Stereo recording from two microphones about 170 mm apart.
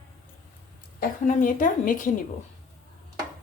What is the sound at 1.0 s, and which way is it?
A woman's voice, 50° left (ahead or behind).